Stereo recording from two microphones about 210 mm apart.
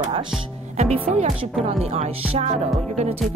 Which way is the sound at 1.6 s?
30° right (ahead or behind).